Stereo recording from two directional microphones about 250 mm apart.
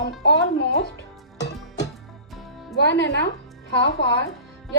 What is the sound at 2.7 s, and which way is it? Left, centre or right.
A woman's voice, left.